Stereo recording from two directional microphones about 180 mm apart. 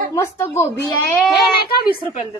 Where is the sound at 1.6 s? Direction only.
55° left (ahead or behind).